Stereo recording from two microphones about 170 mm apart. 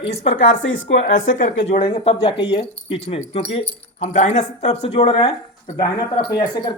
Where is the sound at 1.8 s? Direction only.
30° left (ahead or behind).